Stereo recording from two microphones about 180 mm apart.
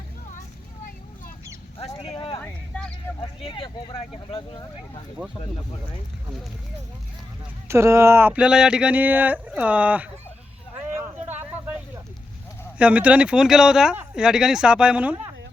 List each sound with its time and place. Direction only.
2.0 s a sound: 30° left (ahead or behind)
2.4 s a sound: 5° left (ahead or behind)
3.2 s speech: 30° left (ahead or behind)
7.7 s speech: 15° right (ahead or behind)
10.9 s vehicle: 10° right (ahead or behind)
12.8 s speech: 5° right (ahead or behind)